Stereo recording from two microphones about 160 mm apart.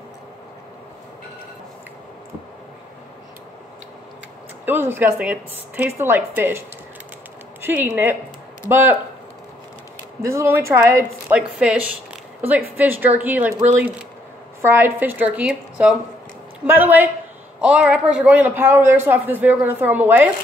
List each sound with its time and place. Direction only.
4.6 s a man's voice: 15° right (ahead or behind)
7.6 s a man's voice: 10° right (ahead or behind)
10.2 s a man's voice: 15° right (ahead or behind)
14.6 s a man's voice: 15° right (ahead or behind)